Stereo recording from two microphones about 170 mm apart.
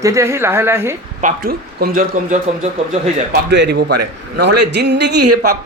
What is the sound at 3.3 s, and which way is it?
A man's voice, 80° right.